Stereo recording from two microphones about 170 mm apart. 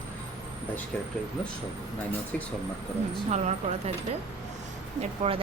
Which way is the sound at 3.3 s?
40° right (ahead or behind).